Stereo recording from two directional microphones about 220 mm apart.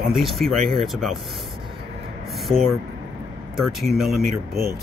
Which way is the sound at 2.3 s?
Centre (ahead or behind).